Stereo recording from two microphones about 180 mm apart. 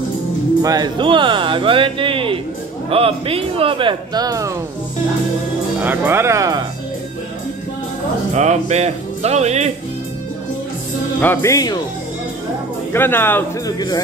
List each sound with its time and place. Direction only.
0.6 s speech: 20° right (ahead or behind)
5.8 s speech: 10° right (ahead or behind)
8.4 s speech: 40° right (ahead or behind)
11.1 s speech: 15° left (ahead or behind)
12.9 s speech: 10° left (ahead or behind)